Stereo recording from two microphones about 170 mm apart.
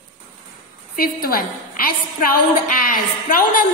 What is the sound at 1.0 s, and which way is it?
A woman's voice, 60° left (ahead or behind).